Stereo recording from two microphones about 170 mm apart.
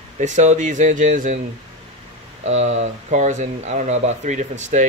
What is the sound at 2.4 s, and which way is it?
Speech, 40° right (ahead or behind).